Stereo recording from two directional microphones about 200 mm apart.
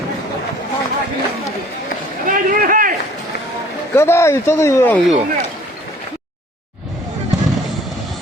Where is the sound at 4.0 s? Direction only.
15° left (ahead or behind).